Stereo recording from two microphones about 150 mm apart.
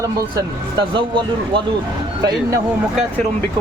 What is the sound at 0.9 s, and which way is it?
Speech, 35° right (ahead or behind).